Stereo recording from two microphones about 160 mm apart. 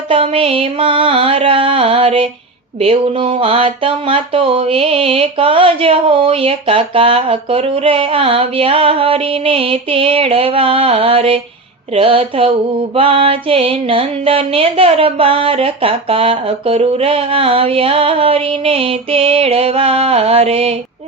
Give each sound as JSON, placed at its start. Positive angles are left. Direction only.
{"t": 0.1, "sound": "speech", "side_deg": -35}